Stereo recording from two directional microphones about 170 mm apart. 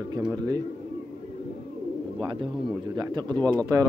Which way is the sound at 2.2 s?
25° right (ahead or behind).